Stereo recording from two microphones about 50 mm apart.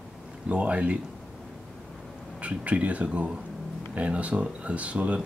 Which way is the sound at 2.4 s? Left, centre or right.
Right.